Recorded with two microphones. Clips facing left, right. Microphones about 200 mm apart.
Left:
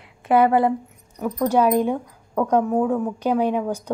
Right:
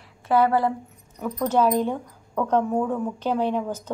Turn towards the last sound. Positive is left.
turn(degrees=10)  # may be behind; listen again after turning